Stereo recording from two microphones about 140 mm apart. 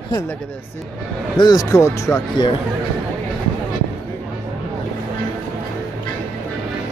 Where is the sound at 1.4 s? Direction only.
30° left (ahead or behind).